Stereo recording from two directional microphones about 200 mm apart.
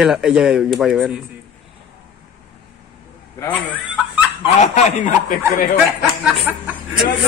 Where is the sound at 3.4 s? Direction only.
10° left (ahead or behind).